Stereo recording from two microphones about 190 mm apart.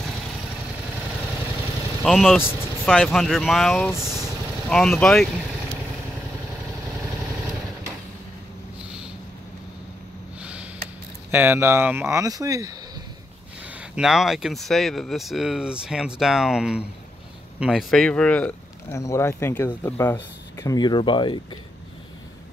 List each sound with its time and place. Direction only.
2.0 s speech: centre (ahead or behind)
2.4 s speech: 10° left (ahead or behind)
4.6 s speech: 5° left (ahead or behind)
10.4 s sniff: 5° right (ahead or behind)
11.2 s speech: 10° right (ahead or behind)
13.9 s speech: 5° right (ahead or behind); by 21.4 s 25° left (ahead or behind)